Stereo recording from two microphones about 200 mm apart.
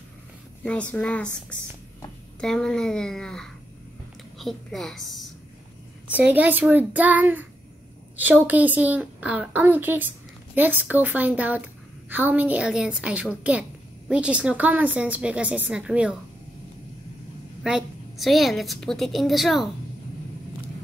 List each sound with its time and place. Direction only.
0.7 s a woman's voice: 5° left (ahead or behind)
2.4 s a woman's voice: 5° left (ahead or behind)
17.6 s a woman's voice: centre (ahead or behind)